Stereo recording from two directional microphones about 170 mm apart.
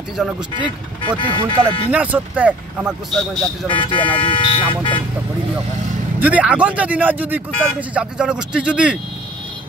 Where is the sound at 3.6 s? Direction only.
30° left (ahead or behind).